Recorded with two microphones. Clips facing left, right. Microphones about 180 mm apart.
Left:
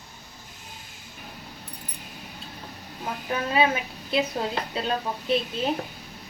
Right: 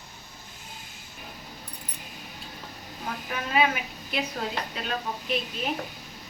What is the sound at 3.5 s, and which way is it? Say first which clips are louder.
A woman's voice: left 1 dB; 30° left (ahead or behind).